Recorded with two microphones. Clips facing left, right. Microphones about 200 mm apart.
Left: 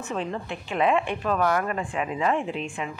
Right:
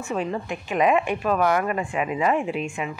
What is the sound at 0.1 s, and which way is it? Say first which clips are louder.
A woman's voice: right 4 dB; 10° right (ahead or behind).